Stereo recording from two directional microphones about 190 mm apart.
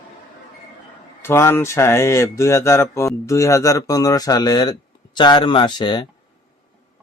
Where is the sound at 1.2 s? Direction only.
15° left (ahead or behind).